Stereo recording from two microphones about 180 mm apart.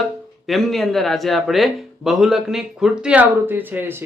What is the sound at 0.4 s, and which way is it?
Speech, centre (ahead or behind).